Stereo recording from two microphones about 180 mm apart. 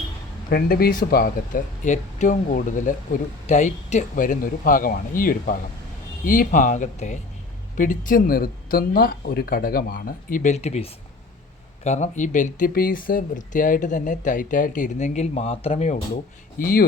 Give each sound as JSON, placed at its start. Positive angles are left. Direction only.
{"t": 0.5, "sound": "speech", "side_deg": 55}
{"t": 16.6, "sound": "speech", "side_deg": 50}